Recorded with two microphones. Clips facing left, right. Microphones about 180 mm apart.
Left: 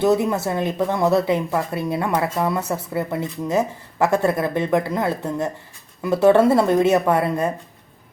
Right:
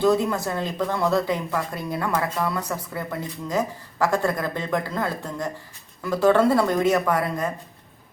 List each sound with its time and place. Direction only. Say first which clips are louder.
0.0 s speech: left 2 dB; 20° left (ahead or behind)